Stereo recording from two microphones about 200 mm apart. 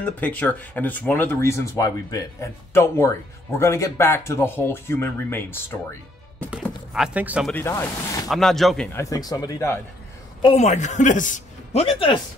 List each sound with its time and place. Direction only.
0.0 s speech: 10° left (ahead or behind)
6.6 s speech: centre (ahead or behind)
7.5 s speech: 15° left (ahead or behind)
8.3 s speech: centre (ahead or behind)
10.4 s a man's voice: 30° left (ahead or behind)